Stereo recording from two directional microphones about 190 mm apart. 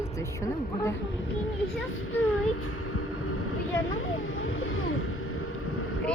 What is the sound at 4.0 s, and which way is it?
Speech, 90° left.